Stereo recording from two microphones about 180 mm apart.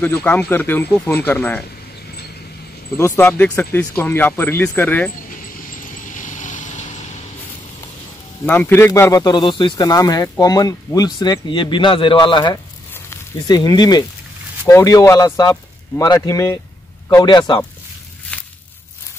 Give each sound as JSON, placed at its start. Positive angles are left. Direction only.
{"t": 0.0, "sound": "speech", "side_deg": 10}
{"t": 3.2, "sound": "speech", "side_deg": 10}
{"t": 5.3, "sound": "vehicle", "side_deg": 50}
{"t": 8.5, "sound": "speech", "side_deg": 10}
{"t": 18.3, "sound": "a sound", "side_deg": 5}